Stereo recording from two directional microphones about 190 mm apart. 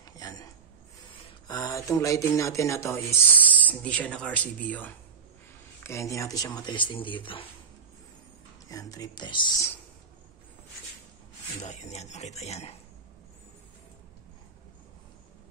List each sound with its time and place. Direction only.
0.0 s a sound: 20° left (ahead or behind)
1.5 s speech: 20° left (ahead or behind)
8.6 s speech: 20° left (ahead or behind)
11.6 s speech: 35° left (ahead or behind)